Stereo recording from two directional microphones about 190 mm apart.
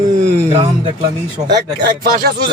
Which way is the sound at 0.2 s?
35° right (ahead or behind).